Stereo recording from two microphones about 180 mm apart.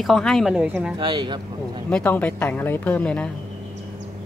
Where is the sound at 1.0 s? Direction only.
25° right (ahead or behind).